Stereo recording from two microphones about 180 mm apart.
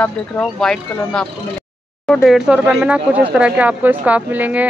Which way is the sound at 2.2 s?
5° right (ahead or behind).